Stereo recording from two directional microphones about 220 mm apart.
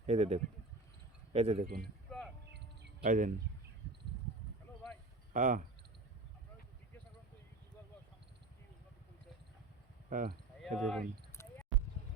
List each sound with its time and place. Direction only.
0.0 s speech: 30° right (ahead or behind)
1.8 s a sound: 5° left (ahead or behind)
3.0 s speech: 40° right (ahead or behind)
5.3 s speech: 40° right (ahead or behind)
10.1 s speech: 35° right (ahead or behind)
10.6 s speech: centre (ahead or behind)
11.4 s a sound: 10° left (ahead or behind)